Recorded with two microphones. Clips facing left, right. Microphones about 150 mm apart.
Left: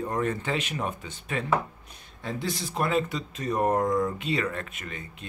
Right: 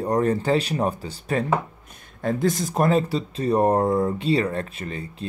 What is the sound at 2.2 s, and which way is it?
Speech, 50° right (ahead or behind).